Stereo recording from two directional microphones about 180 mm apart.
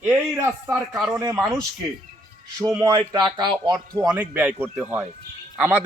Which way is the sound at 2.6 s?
20° right (ahead or behind).